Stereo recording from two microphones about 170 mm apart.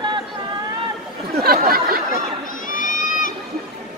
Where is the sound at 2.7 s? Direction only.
50° left (ahead or behind).